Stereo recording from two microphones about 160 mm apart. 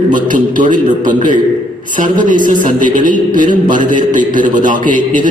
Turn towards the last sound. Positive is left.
turn(degrees=-55)  # may be behind; listen again after turning